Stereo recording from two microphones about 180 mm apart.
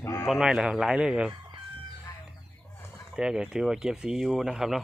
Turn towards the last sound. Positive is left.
turn(degrees=-5)  # may be behind; listen again after turning